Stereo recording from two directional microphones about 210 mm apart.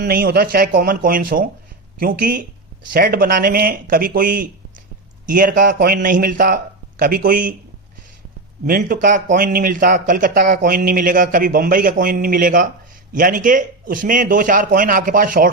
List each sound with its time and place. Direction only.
0.0 s a man's voice: 45° right (ahead or behind)
8.6 s a man's voice: 40° right (ahead or behind)